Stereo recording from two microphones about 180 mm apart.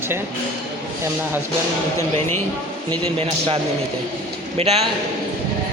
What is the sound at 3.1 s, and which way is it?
A man's voice, 35° right (ahead or behind).